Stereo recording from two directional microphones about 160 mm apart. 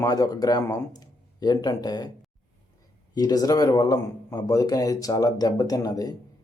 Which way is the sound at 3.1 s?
25° left (ahead or behind).